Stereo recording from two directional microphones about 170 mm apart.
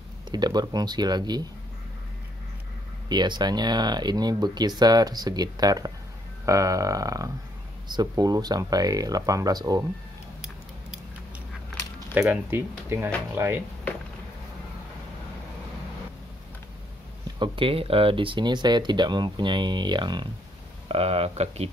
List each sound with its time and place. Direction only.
0.3 s speech: 25° right (ahead or behind)
3.1 s speech: 25° right (ahead or behind)
12.1 s speech: 10° right (ahead or behind)
17.4 s speech: 30° right (ahead or behind)